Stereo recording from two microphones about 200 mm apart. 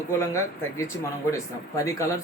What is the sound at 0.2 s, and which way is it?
A man's voice, 15° left (ahead or behind).